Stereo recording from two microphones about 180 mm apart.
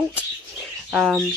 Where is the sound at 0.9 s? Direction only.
10° right (ahead or behind).